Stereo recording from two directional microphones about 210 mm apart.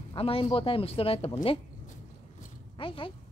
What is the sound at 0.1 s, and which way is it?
Speech, 25° left (ahead or behind).